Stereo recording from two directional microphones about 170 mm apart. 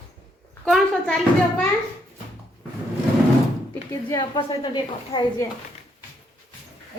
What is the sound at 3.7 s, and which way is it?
A woman's voice, 15° left (ahead or behind).